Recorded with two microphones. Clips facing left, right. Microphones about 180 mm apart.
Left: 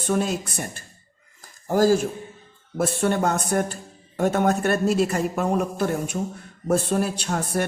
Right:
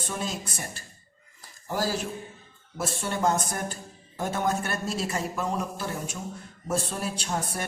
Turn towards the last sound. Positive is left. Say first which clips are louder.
# left 6 dB
turn(degrees=65)  # may be behind; listen again after turning